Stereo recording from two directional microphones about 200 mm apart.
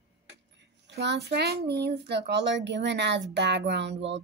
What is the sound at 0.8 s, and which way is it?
Speech, 60° right (ahead or behind).